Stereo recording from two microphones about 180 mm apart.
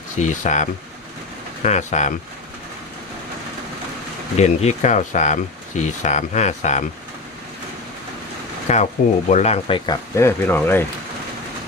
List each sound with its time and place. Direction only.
0.2 s speech: 40° left (ahead or behind)
4.4 s speech: 35° left (ahead or behind)
8.7 s speech: 40° left (ahead or behind); by 10.8 s 10° left (ahead or behind)